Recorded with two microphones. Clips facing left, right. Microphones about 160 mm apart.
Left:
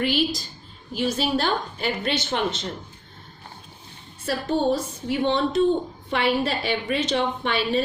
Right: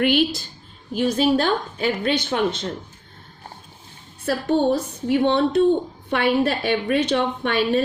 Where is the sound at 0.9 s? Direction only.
50° right (ahead or behind).